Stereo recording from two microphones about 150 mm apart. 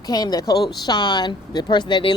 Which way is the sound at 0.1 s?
25° left (ahead or behind).